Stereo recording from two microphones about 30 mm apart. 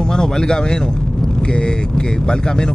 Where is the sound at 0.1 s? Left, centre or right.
Left.